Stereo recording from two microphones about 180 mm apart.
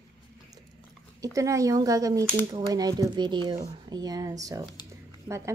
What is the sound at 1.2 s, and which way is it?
A woman's voice, 20° right (ahead or behind).